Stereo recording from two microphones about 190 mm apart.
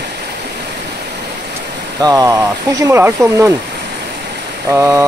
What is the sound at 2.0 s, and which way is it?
Speech, 20° right (ahead or behind).